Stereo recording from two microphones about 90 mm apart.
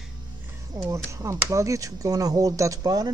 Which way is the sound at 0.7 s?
40° right (ahead or behind).